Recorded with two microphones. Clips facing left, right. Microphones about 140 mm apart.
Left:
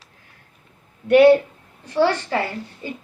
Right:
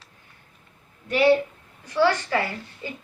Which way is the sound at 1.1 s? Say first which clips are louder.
Left 8 dB; 60° left (ahead or behind).